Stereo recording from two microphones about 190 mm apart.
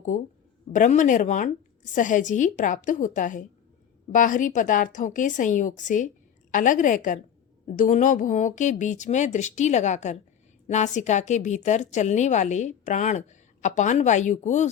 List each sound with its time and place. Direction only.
0.7 s a woman's voice: 40° left (ahead or behind)